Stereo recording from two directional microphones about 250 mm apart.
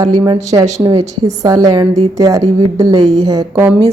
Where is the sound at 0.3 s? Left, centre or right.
Centre.